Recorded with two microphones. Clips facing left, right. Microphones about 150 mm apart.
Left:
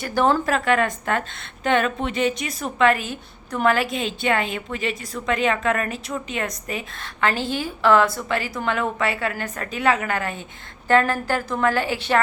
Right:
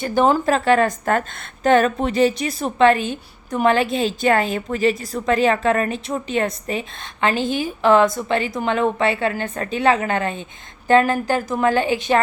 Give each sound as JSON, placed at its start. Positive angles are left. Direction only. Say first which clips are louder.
{"t": 0.0, "sound": "a woman's voice", "louder": "right 3 dB", "side_deg": -20}